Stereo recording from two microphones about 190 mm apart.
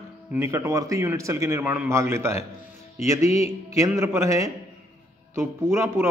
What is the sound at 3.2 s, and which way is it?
Speech, 35° left (ahead or behind).